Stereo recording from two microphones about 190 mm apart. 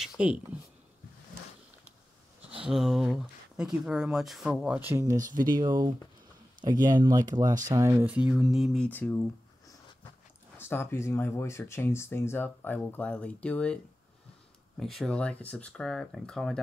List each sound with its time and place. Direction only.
0.2 s speech: 5° right (ahead or behind)
2.6 s speech: centre (ahead or behind)
10.6 s speech: 10° left (ahead or behind)
14.8 s speech: centre (ahead or behind)